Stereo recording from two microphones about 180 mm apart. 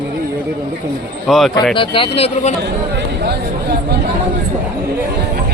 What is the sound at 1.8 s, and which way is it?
Speech, 30° left (ahead or behind).